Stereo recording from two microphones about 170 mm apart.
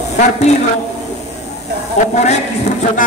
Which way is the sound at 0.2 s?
40° left (ahead or behind).